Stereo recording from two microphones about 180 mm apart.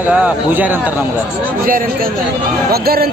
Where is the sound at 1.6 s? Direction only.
50° right (ahead or behind).